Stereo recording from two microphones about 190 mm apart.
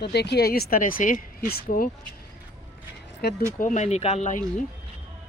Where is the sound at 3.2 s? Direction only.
60° left (ahead or behind).